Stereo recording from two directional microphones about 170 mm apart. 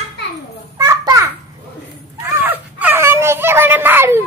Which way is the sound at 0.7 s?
20° right (ahead or behind).